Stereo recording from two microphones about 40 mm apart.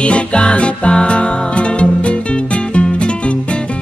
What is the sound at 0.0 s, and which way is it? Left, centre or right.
Music, left.